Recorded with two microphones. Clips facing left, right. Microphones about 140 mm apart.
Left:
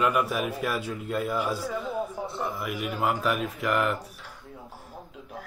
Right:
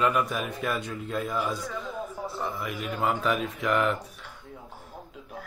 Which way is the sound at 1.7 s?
10° left (ahead or behind).